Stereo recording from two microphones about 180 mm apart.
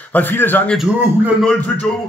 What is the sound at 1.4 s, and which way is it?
Speech, 10° left (ahead or behind).